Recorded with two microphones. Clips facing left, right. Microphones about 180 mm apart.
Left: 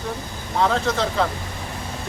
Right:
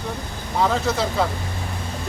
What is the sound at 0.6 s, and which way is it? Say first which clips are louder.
Speech: even; 5° right (ahead or behind).